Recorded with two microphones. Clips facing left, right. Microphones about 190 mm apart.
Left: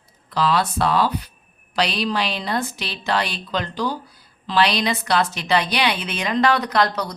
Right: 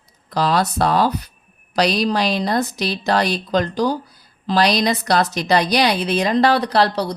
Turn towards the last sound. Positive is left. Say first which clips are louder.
# right 3 dB
turn(degrees=-30)  # may be behind; listen again after turning